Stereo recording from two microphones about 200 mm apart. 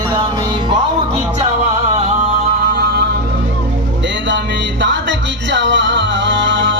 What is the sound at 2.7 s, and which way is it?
Music, 50° right (ahead or behind).